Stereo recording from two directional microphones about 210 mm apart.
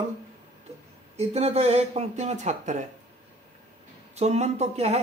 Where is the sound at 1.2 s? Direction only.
30° right (ahead or behind).